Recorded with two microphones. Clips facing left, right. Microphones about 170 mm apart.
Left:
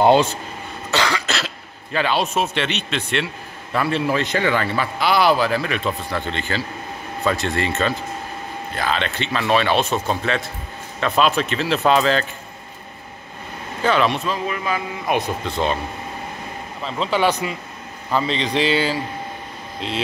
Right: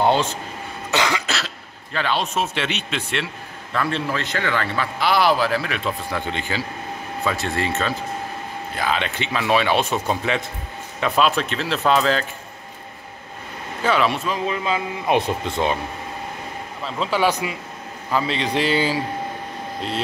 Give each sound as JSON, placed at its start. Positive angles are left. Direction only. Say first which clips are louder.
{"t": 0.0, "sound": "speech", "louder": "left 4 dB", "side_deg": 15}
{"t": 0.9, "sound": "cough", "louder": "even", "side_deg": -15}
{"t": 2.0, "sound": "a man's voice", "louder": "left 3 dB", "side_deg": 5}
{"t": 3.7, "sound": "a man's voice", "louder": "left 4 dB", "side_deg": 10}
{"t": 13.8, "sound": "speech", "louder": "left 1 dB", "side_deg": -5}
{"t": 14.5, "sound": "speech", "louder": "right 1 dB", "side_deg": -25}
{"t": 16.8, "sound": "a man's voice", "louder": "left 1 dB", "side_deg": -5}